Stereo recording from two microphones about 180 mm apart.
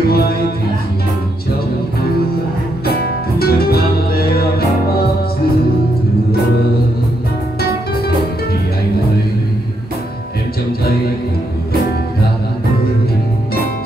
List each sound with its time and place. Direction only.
0.1 s music: 60° left (ahead or behind)
2.8 s music: 60° left (ahead or behind)